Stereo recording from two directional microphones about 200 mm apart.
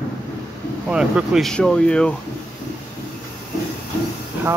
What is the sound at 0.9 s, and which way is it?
Speech, 5° right (ahead or behind).